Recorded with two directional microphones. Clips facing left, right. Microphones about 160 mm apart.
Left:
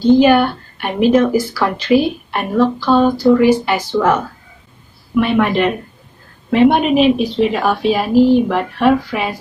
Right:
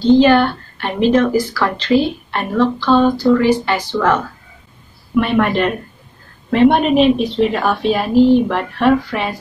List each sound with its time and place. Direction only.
0.0 s a woman's voice: 10° left (ahead or behind)